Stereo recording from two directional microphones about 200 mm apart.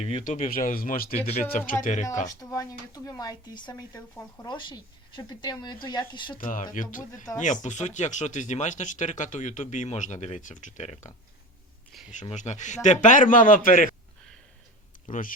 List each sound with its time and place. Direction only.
0.0 s speech: 35° left (ahead or behind)
2.2 s a woman's voice: 20° left (ahead or behind)
6.4 s speech: 40° left (ahead or behind)
11.9 s a sound: centre (ahead or behind)
12.2 s speech: 35° left (ahead or behind)
15.0 s speech: 40° left (ahead or behind)